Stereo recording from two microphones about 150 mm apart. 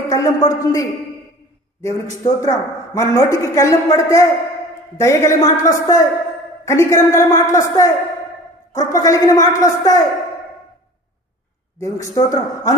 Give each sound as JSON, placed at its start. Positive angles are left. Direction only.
{"t": 0.1, "sound": "a man's voice", "side_deg": 20}
{"t": 11.8, "sound": "a man's voice", "side_deg": 20}